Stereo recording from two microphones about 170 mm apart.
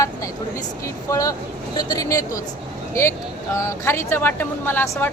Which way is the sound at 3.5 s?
15° left (ahead or behind).